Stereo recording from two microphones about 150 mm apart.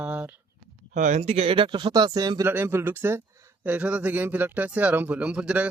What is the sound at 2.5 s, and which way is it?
A man's voice, 15° right (ahead or behind).